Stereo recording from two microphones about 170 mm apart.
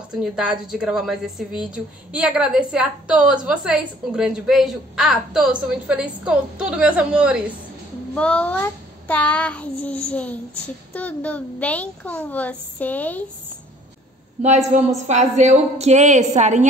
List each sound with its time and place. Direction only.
0.1 s a woman's voice: 5° right (ahead or behind)
8.1 s child singing: 5° left (ahead or behind)
15.0 s a woman's voice: 45° right (ahead or behind)